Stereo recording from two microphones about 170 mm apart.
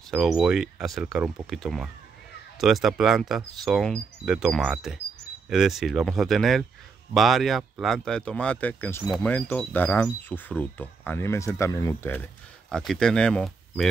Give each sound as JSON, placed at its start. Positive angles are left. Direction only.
{"t": 0.1, "sound": "speech", "side_deg": 0}
{"t": 12.6, "sound": "speech", "side_deg": 0}